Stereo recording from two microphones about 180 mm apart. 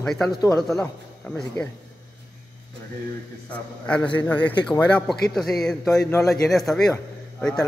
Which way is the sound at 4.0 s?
25° left (ahead or behind).